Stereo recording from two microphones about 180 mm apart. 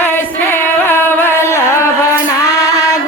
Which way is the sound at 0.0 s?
10° left (ahead or behind).